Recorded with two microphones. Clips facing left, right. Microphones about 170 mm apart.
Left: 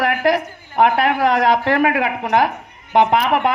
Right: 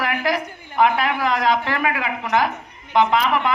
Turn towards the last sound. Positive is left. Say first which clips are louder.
# left 3 dB
turn(degrees=55)  # may be behind; listen again after turning